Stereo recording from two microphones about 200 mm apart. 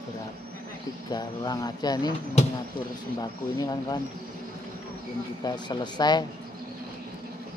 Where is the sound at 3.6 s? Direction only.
20° left (ahead or behind).